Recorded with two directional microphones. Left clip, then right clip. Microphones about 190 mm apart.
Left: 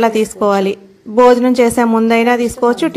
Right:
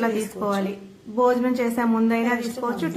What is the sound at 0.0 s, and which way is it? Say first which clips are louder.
A woman's voice: left 12 dB; 40° left (ahead or behind).